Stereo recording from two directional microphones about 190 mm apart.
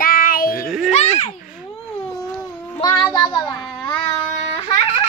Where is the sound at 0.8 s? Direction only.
35° left (ahead or behind).